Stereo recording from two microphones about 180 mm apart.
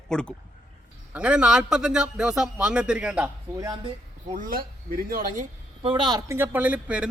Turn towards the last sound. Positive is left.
turn(degrees=-5)  # may be behind; listen again after turning